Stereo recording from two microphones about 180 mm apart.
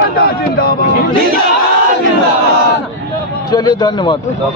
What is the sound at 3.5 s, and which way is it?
Speech, 20° left (ahead or behind).